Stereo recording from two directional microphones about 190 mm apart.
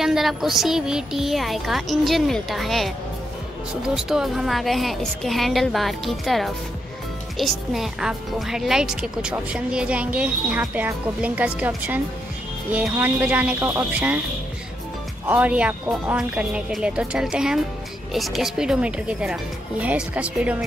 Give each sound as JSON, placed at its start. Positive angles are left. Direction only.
{"t": 0.0, "sound": "speech", "side_deg": 0}
{"t": 3.9, "sound": "speech", "side_deg": 0}
{"t": 15.2, "sound": "speech", "side_deg": -10}